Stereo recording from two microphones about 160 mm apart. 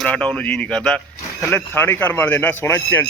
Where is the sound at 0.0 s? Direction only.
5° left (ahead or behind).